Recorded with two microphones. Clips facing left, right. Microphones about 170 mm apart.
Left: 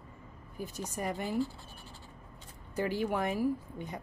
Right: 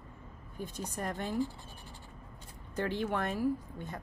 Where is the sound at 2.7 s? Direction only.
10° left (ahead or behind).